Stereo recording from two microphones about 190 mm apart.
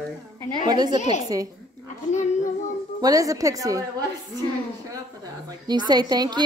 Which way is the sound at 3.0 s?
20° right (ahead or behind).